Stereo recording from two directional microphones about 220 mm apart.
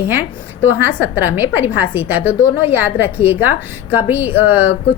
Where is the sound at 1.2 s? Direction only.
10° right (ahead or behind).